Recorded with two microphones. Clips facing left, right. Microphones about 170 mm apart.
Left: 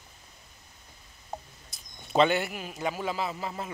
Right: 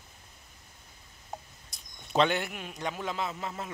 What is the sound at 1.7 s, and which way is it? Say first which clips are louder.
A man's voice: left 3 dB; centre (ahead or behind).